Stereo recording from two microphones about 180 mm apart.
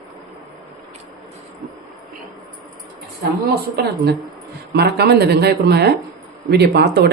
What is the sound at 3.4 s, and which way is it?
A woman's voice, 60° right (ahead or behind).